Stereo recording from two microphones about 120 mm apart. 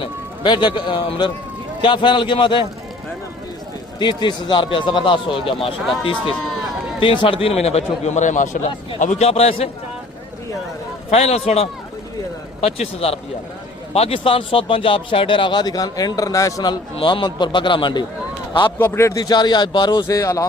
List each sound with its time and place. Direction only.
0.0 s a man's voice: 40° left (ahead or behind)
4.0 s a man's voice: 40° left (ahead or behind)
6.4 s run: centre (ahead or behind)
7.0 s a man's voice: 45° left (ahead or behind); by 8.7 s 90° left
9.0 s a man's voice: 80° left; by 9.6 s 60° left (ahead or behind)
11.1 s a man's voice: 60° left (ahead or behind); by 16.7 s 30° left (ahead or behind)
17.0 s a man's voice: 45° left (ahead or behind)
18.8 s a man's voice: 20° left (ahead or behind); by 20.1 s 40° left (ahead or behind)
20.1 s speech: 25° left (ahead or behind)